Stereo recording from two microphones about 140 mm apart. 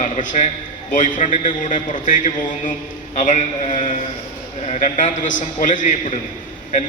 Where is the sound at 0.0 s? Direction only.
65° left (ahead or behind).